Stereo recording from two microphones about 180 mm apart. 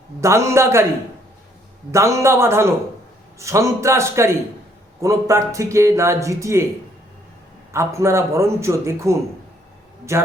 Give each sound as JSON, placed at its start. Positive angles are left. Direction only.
{"t": 0.2, "sound": "speech", "side_deg": -15}
{"t": 1.9, "sound": "speech", "side_deg": -15}
{"t": 7.7, "sound": "speech", "side_deg": -15}